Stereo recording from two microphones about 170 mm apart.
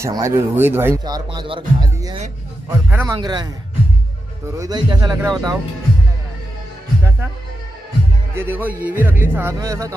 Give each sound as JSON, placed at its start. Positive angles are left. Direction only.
{"t": 0.0, "sound": "speech", "side_deg": -15}
{"t": 2.7, "sound": "speech", "side_deg": -15}
{"t": 3.2, "sound": "speech", "side_deg": -25}
{"t": 4.5, "sound": "speech", "side_deg": -20}
{"t": 8.4, "sound": "speech", "side_deg": -10}